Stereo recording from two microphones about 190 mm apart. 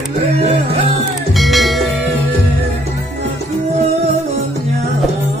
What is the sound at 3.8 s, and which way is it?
Music, 35° right (ahead or behind).